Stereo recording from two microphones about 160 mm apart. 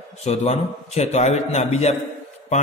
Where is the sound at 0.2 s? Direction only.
40° left (ahead or behind).